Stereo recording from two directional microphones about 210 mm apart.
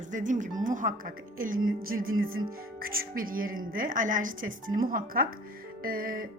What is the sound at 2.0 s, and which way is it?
Music, 75° right (ahead or behind).